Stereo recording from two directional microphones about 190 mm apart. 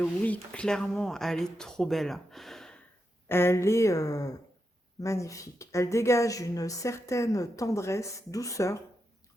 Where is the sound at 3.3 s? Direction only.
10° left (ahead or behind).